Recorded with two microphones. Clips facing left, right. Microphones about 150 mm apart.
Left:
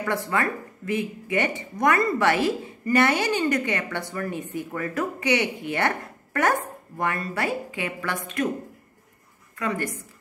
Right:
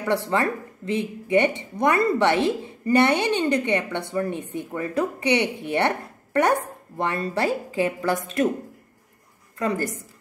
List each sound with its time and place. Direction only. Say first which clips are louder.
0.3 s a woman's voice: right 2 dB; 25° right (ahead or behind)
9.6 s a woman's voice: right 3 dB; 35° right (ahead or behind)